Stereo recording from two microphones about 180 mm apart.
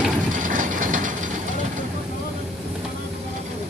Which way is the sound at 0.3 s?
45° right (ahead or behind).